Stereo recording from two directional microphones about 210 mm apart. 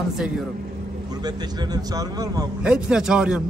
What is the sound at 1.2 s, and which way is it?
A man's voice, 20° right (ahead or behind).